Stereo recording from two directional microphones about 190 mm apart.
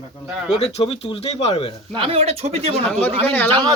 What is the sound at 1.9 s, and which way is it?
Speech, 30° right (ahead or behind).